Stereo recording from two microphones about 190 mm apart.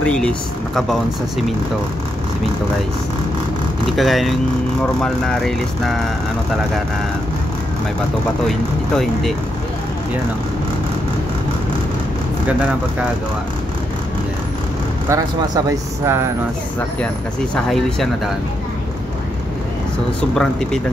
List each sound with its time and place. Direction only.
0.0 s speech: 5° left (ahead or behind)
3.9 s speech: centre (ahead or behind)
8.5 s speech: centre (ahead or behind)
15.0 s speech: 15° right (ahead or behind)
17.6 s speech: centre (ahead or behind)
20.2 s speech: 5° left (ahead or behind)